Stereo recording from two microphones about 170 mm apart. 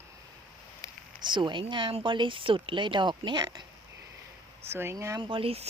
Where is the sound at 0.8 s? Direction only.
20° left (ahead or behind).